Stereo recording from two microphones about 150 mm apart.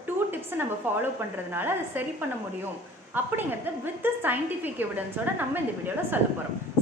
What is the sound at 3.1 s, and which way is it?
A woman's voice, 15° right (ahead or behind).